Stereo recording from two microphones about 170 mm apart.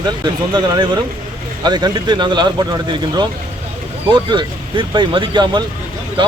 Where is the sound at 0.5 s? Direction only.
25° right (ahead or behind).